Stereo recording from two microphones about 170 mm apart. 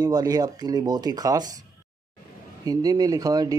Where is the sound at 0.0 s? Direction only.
25° right (ahead or behind).